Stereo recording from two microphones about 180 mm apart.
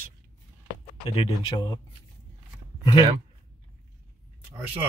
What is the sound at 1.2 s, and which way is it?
Speech, 30° left (ahead or behind).